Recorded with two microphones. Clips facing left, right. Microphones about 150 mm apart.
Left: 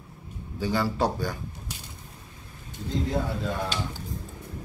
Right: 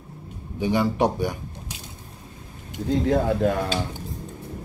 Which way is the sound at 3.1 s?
60° right (ahead or behind).